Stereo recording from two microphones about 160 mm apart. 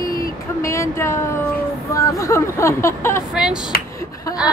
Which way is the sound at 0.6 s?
20° left (ahead or behind).